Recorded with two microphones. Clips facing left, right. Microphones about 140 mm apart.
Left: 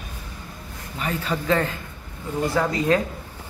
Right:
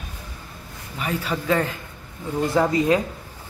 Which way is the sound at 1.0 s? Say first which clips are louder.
Even; 10° right (ahead or behind).